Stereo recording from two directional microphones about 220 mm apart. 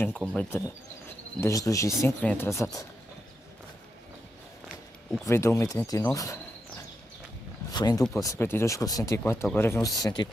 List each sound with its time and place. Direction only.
0.0 s speech: 5° left (ahead or behind)
5.2 s speech: 10° left (ahead or behind)
7.7 s speech: 15° left (ahead or behind)